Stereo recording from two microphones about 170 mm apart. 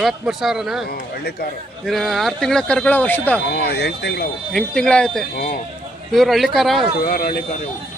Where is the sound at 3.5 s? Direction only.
75° left (ahead or behind).